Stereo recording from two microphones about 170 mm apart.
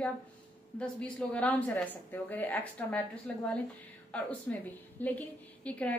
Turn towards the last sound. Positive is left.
turn(degrees=10)  # may be behind; listen again after turning